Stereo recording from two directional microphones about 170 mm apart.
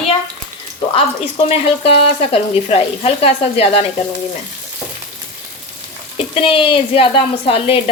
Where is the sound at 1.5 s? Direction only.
35° left (ahead or behind).